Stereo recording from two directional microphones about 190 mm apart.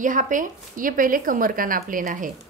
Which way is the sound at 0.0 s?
45° right (ahead or behind).